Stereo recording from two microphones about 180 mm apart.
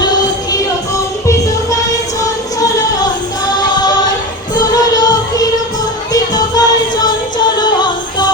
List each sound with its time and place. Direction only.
0.0 s music: 20° left (ahead or behind)
2.6 s female singing: 20° left (ahead or behind)
4.5 s music: 20° left (ahead or behind)